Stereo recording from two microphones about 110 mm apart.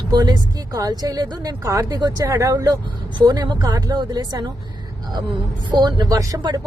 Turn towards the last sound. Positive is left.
turn(degrees=-40)  # may be behind; listen again after turning